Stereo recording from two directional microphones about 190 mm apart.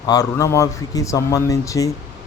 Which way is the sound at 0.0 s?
20° left (ahead or behind).